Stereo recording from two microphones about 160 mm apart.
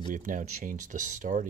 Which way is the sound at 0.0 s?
50° right (ahead or behind).